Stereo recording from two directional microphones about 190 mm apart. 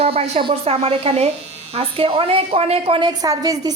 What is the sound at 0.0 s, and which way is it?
A woman's voice, 30° right (ahead or behind).